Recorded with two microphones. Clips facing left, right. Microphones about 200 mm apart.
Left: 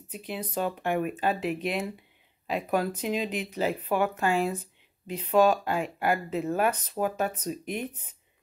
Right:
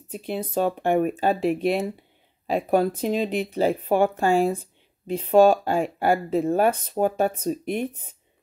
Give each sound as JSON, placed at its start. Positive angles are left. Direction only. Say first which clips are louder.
{"t": 0.4, "sound": "speech", "louder": "right 6 dB", "side_deg": -25}
{"t": 0.7, "sound": "speech", "louder": "right 7 dB", "side_deg": -40}
{"t": 3.0, "sound": "speech", "louder": "right 5 dB", "side_deg": -45}
{"t": 3.3, "sound": "speech", "louder": "right 6 dB", "side_deg": -30}